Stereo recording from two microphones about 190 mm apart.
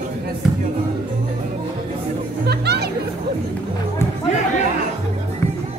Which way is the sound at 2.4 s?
60° right (ahead or behind).